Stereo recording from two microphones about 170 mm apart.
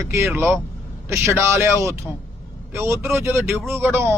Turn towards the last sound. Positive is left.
turn(degrees=-15)  # may be behind; listen again after turning